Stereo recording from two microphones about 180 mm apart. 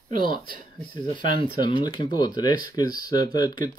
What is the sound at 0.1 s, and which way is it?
Speech, 50° right (ahead or behind).